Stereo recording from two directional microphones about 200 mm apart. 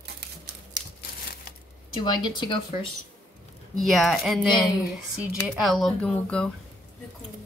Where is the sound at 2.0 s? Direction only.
20° left (ahead or behind).